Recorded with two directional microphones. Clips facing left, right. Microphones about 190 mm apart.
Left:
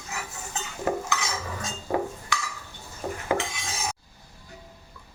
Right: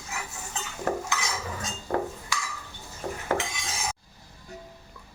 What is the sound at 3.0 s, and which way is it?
Dishes, 5° left (ahead or behind).